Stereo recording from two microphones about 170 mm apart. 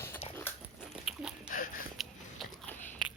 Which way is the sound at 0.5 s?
10° left (ahead or behind).